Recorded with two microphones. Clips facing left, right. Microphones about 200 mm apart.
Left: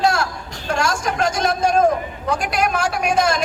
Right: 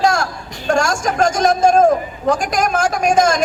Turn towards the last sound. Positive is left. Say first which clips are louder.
# right 4 dB
turn(degrees=-45)  # may be behind; listen again after turning